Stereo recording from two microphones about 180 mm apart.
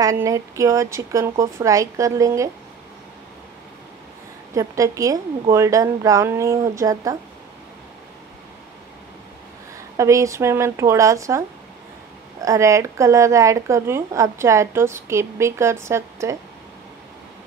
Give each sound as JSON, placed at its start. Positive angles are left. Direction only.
{"t": 0.0, "sound": "speech", "side_deg": -15}
{"t": 4.6, "sound": "speech", "side_deg": -15}
{"t": 9.9, "sound": "speech", "side_deg": -15}